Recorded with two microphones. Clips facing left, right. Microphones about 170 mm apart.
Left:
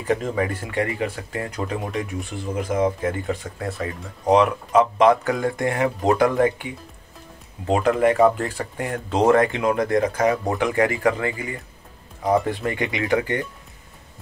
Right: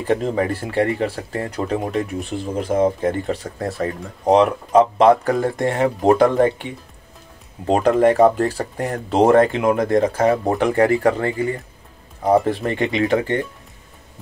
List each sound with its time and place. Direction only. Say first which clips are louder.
0.0 s speech: right 3 dB; 30° right (ahead or behind)